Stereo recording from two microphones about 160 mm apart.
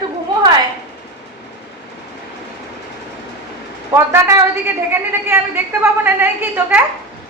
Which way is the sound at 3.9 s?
15° right (ahead or behind).